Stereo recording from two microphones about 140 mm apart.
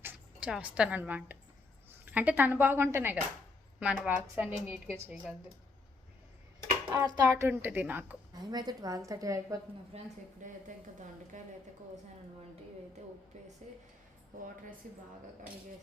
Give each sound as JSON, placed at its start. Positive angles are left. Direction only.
{"t": 0.0, "sound": "speech", "side_deg": -10}
{"t": 6.9, "sound": "a woman's voice", "side_deg": -30}
{"t": 7.3, "sound": "speech", "side_deg": -15}
{"t": 8.4, "sound": "a woman's voice", "side_deg": -30}
{"t": 9.9, "sound": "speech", "side_deg": -45}
{"t": 10.4, "sound": "speech", "side_deg": -65}
{"t": 13.6, "sound": "speech", "side_deg": -55}